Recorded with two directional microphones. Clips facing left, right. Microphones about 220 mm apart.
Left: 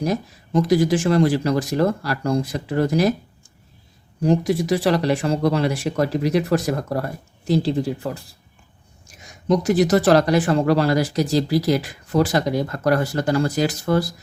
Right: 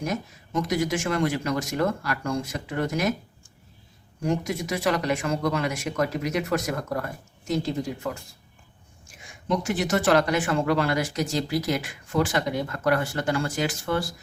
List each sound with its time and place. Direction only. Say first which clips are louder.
0.0 s speech: left 6 dB; 35° left (ahead or behind)
4.2 s speech: left 8 dB; 35° left (ahead or behind)